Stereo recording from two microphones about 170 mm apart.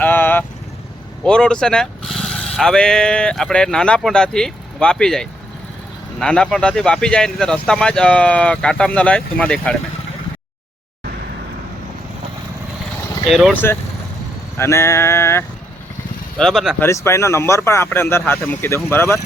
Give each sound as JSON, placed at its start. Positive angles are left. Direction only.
{"t": 0.0, "sound": "vehicle", "side_deg": 10}
{"t": 1.2, "sound": "speech", "side_deg": 5}
{"t": 13.5, "sound": "speech", "side_deg": 10}
{"t": 16.4, "sound": "speech", "side_deg": 0}
{"t": 16.8, "sound": "speech", "side_deg": 15}